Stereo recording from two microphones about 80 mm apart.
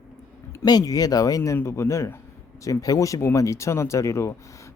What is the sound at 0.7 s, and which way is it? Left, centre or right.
Speech, left.